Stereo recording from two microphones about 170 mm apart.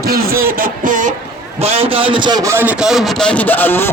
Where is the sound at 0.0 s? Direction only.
60° right (ahead or behind).